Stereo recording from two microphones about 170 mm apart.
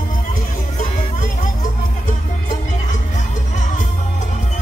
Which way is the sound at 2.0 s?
45° left (ahead or behind).